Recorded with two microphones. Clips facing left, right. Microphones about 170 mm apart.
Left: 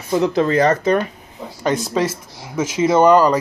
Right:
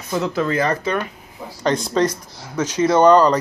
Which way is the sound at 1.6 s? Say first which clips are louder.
Right 1 dB; 5° left (ahead or behind).